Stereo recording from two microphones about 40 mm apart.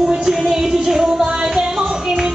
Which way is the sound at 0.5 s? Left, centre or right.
Centre.